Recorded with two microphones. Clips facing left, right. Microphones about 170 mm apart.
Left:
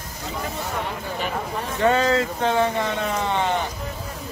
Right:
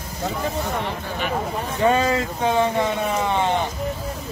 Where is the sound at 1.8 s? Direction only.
15° right (ahead or behind).